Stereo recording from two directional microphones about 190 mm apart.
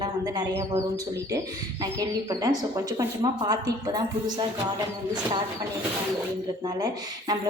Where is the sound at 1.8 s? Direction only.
20° right (ahead or behind).